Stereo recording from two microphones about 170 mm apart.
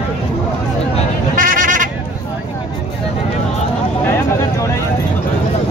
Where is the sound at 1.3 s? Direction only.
55° right (ahead or behind).